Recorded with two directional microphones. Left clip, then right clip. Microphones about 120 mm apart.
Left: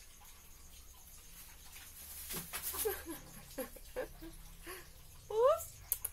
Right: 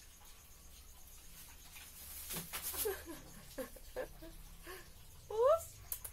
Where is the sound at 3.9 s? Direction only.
55° left (ahead or behind).